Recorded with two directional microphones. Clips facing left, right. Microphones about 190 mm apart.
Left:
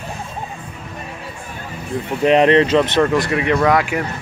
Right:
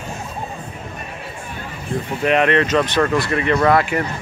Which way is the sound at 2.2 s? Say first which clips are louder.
Left 4 dB; 30° left (ahead or behind).